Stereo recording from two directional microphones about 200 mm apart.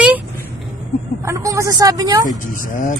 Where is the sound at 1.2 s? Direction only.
15° right (ahead or behind).